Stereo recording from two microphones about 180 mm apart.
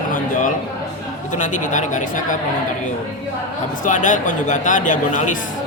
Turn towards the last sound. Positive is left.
turn(degrees=45)  # may be behind; listen again after turning